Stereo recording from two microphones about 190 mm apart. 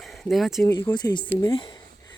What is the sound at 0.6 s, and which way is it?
Speech, 20° left (ahead or behind).